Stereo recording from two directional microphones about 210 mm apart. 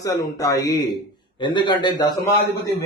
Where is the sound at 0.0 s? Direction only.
15° left (ahead or behind).